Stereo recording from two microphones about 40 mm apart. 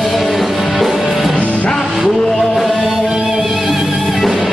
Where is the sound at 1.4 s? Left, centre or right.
Left.